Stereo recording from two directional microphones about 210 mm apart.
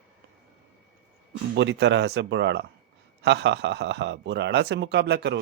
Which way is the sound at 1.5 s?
55° right (ahead or behind).